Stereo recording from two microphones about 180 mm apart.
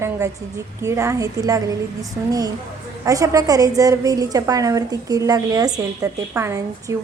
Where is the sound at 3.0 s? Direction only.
20° right (ahead or behind).